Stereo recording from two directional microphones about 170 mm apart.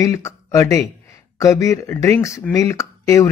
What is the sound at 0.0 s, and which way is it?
Speech, 20° left (ahead or behind).